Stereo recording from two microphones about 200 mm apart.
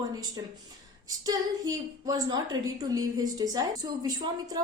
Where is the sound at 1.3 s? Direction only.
15° right (ahead or behind).